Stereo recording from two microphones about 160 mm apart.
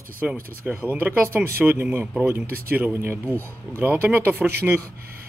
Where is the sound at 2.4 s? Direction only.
65° right (ahead or behind).